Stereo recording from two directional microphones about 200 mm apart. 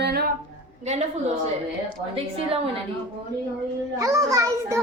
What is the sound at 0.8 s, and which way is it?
Speech, 35° right (ahead or behind).